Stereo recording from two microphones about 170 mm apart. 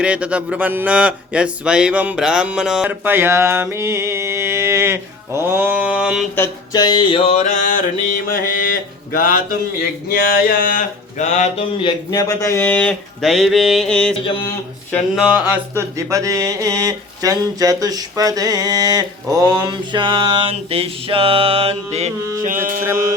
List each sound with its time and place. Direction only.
0.0 s speech: 5° right (ahead or behind)
6.3 s a sound: 15° left (ahead or behind)
6.8 s music: 30° left (ahead or behind); by 9.4 s 55° left (ahead or behind)
10.1 s a sound: 60° left (ahead or behind)
11.8 s speech: 25° left (ahead or behind); by 14.1 s 5° left (ahead or behind)
15.7 s speech: 15° right (ahead or behind); by 22.1 s 35° right (ahead or behind)
22.4 s music: 55° right (ahead or behind)